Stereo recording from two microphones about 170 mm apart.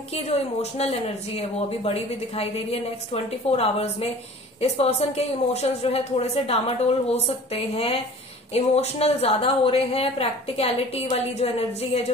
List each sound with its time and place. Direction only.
0.1 s a woman's voice: 35° left (ahead or behind)